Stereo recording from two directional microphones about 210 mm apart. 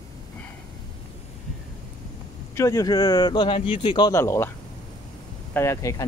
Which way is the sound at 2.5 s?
15° left (ahead or behind).